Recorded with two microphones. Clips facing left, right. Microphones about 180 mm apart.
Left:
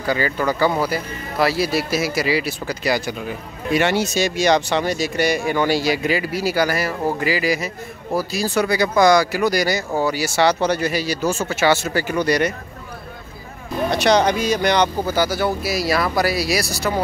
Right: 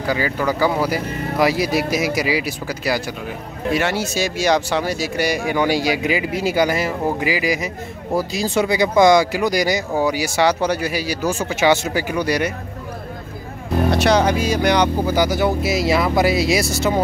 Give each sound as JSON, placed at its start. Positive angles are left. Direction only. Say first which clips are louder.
{"t": 0.0, "sound": "speech", "louder": "even", "side_deg": -5}
{"t": 13.9, "sound": "speech", "louder": "left 1 dB", "side_deg": -5}